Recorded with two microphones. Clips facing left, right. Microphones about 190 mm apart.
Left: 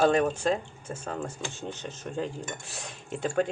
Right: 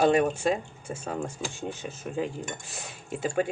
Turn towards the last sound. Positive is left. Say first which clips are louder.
# even
turn(degrees=-5)  # may be behind; listen again after turning